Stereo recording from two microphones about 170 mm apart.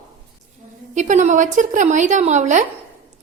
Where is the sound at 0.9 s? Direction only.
45° right (ahead or behind).